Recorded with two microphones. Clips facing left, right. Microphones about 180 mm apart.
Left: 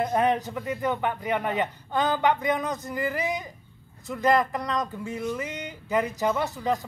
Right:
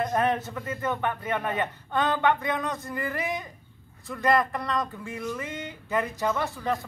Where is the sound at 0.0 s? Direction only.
15° left (ahead or behind).